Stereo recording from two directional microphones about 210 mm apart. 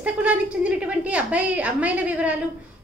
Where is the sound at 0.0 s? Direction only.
5° right (ahead or behind).